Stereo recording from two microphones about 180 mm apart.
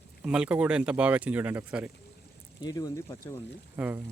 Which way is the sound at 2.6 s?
20° left (ahead or behind).